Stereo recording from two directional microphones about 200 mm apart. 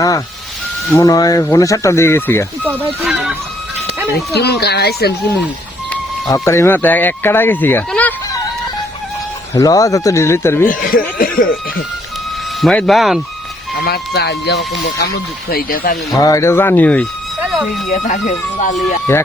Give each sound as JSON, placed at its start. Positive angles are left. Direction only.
{"t": 0.9, "sound": "speech", "side_deg": 15}
{"t": 2.6, "sound": "speech", "side_deg": -10}
{"t": 4.4, "sound": "speech", "side_deg": 55}
{"t": 6.2, "sound": "speech", "side_deg": 15}
{"t": 9.6, "sound": "speech", "side_deg": 15}
{"t": 10.7, "sound": "speech", "side_deg": 45}
{"t": 12.6, "sound": "speech", "side_deg": 0}
{"t": 13.7, "sound": "speech", "side_deg": 50}
{"t": 16.1, "sound": "speech", "side_deg": 15}
{"t": 18.0, "sound": "speech", "side_deg": 35}
{"t": 19.1, "sound": "speech", "side_deg": 10}